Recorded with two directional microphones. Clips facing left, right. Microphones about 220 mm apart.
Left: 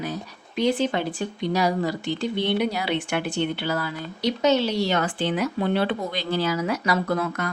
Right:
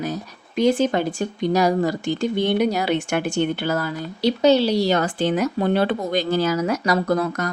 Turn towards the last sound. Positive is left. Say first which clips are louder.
# right 4 dB
turn(degrees=-40)  # may be behind; listen again after turning